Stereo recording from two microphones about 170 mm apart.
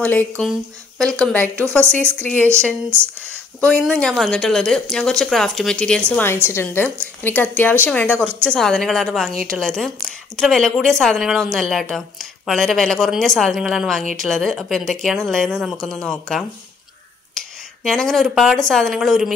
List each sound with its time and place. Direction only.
0.0 s a woman's voice: 10° left (ahead or behind)
2.9 s speech: 15° right (ahead or behind)
3.6 s a woman's voice: 5° left (ahead or behind)